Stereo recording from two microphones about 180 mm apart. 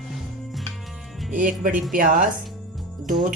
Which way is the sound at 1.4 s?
50° right (ahead or behind).